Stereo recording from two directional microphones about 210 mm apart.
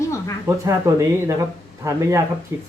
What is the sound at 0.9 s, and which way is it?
Speech, 15° right (ahead or behind).